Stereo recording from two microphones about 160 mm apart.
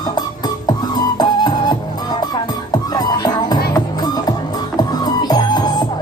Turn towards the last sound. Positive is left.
turn(degrees=25)  # may be behind; listen again after turning